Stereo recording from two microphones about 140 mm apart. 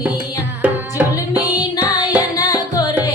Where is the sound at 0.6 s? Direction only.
10° right (ahead or behind).